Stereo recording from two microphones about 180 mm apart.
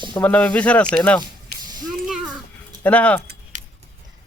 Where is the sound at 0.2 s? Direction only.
10° left (ahead or behind).